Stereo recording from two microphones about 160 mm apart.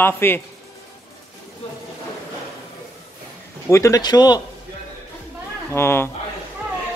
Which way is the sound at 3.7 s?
20° left (ahead or behind).